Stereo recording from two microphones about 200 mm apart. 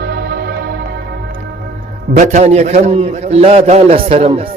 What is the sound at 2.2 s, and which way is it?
A man's voice, 35° right (ahead or behind).